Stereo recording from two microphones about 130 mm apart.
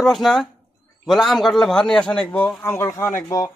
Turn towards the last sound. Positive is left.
turn(degrees=25)  # may be behind; listen again after turning